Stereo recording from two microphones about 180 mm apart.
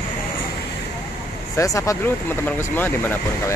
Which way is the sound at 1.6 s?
15° left (ahead or behind).